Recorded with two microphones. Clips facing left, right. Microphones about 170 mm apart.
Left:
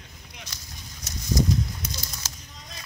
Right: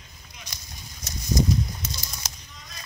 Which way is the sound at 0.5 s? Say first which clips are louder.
Even; 15° right (ahead or behind).